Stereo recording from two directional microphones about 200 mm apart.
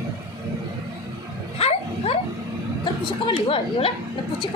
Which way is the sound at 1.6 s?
30° left (ahead or behind).